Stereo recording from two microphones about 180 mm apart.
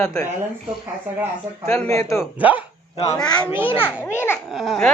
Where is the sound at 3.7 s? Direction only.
10° left (ahead or behind).